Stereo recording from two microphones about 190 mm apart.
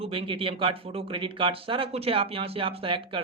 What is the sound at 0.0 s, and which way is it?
Speech, 30° right (ahead or behind).